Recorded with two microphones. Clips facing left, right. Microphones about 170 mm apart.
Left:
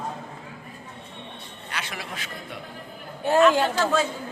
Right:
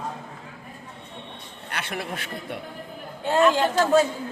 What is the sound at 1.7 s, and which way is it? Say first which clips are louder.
Speech: right 4 dB; 55° right (ahead or behind).